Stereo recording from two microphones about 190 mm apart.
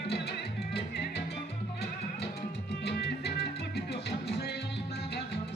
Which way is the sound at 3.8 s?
60° left (ahead or behind).